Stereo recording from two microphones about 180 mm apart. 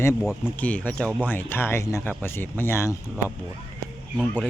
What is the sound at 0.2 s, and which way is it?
Speech, centre (ahead or behind).